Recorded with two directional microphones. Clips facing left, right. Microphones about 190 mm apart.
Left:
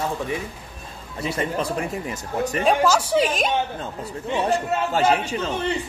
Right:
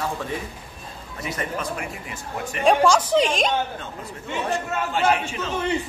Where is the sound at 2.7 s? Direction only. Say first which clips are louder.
Right 3 dB; 5° left (ahead or behind).